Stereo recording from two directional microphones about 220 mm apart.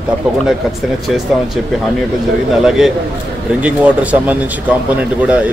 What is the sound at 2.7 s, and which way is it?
A man's voice, centre (ahead or behind).